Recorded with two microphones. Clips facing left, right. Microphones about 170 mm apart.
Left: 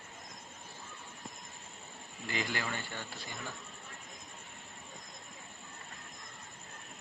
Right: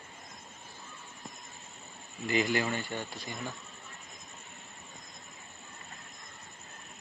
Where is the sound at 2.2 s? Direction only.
15° right (ahead or behind).